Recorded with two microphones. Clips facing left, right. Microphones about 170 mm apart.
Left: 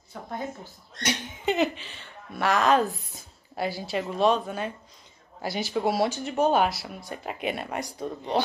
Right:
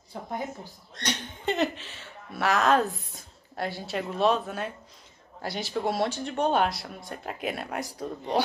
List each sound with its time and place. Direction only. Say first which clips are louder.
0.1 s speech: right 2 dB; 25° right (ahead or behind)
1.0 s a woman's voice: left 2 dB; 5° left (ahead or behind)